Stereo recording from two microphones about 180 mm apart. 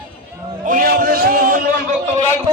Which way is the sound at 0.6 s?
50° right (ahead or behind).